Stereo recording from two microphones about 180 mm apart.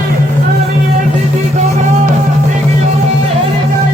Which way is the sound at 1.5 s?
45° right (ahead or behind).